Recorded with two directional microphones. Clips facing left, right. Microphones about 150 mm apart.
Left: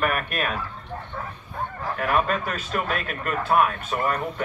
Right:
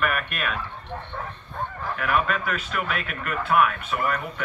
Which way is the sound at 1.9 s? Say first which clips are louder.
Left 2 dB; 35° left (ahead or behind).